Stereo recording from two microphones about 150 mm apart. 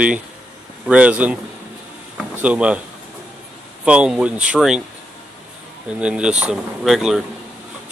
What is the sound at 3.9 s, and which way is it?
Speech, 5° right (ahead or behind).